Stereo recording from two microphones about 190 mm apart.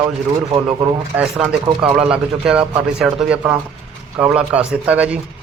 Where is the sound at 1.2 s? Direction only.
5° right (ahead or behind).